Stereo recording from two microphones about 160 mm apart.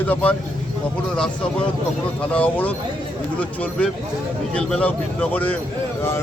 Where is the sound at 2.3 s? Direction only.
10° left (ahead or behind).